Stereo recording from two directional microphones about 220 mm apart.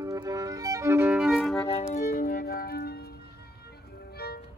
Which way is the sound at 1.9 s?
40° left (ahead or behind).